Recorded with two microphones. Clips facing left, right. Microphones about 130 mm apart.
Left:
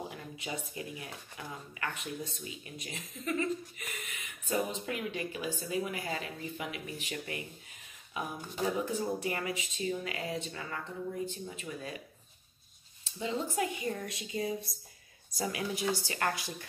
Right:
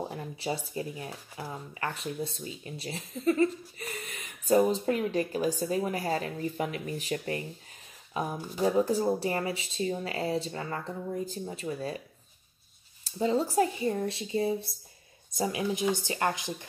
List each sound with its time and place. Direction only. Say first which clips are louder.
0.1 s speech: right 7 dB; 35° right (ahead or behind)
13.0 s speech: right 8 dB; 40° right (ahead or behind); by 16.5 s 20° right (ahead or behind)